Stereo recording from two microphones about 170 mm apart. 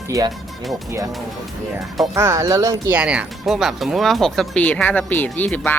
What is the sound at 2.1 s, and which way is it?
Speech, 20° right (ahead or behind).